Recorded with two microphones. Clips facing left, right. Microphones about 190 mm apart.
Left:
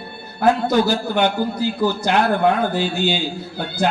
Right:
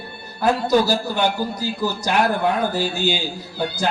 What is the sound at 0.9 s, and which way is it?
A man's voice, 60° left (ahead or behind).